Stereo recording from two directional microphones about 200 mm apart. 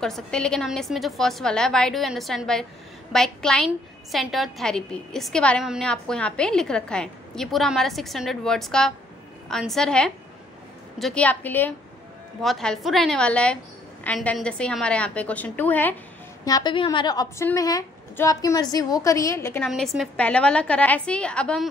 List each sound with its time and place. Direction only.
0.0 s a woman's voice: 5° left (ahead or behind)
16.4 s a woman's voice: 20° left (ahead or behind)
19.7 s a woman's voice: centre (ahead or behind)